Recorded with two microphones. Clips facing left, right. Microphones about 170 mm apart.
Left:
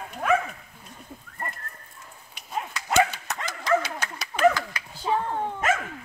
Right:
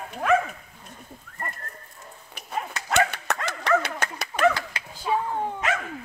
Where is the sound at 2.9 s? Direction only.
60° right (ahead or behind).